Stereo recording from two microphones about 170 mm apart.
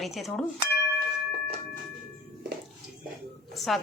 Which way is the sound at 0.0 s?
Centre (ahead or behind).